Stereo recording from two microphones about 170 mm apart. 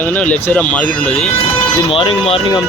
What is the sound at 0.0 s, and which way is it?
Speech, 10° left (ahead or behind).